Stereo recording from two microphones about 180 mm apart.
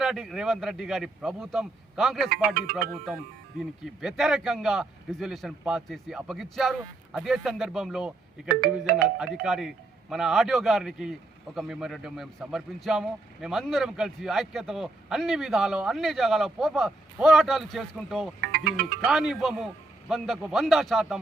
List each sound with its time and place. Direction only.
0.0 s a man's voice: centre (ahead or behind)
3.6 s a man's voice: centre (ahead or behind)
18.3 s speech: 55° right (ahead or behind)
19.0 s a man's voice: 5° right (ahead or behind)